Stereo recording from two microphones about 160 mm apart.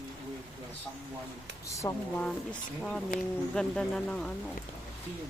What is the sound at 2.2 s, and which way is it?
Speech, 5° left (ahead or behind).